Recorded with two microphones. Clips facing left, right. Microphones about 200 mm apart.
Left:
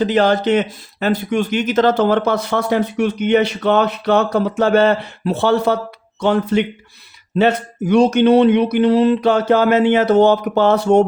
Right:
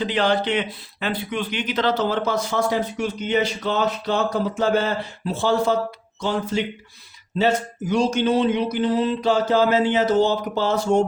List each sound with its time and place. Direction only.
0.0 s speech: 45° left (ahead or behind); by 11.0 s 65° left (ahead or behind)